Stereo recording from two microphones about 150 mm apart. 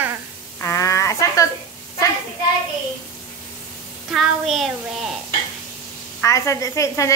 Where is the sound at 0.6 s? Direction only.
20° left (ahead or behind).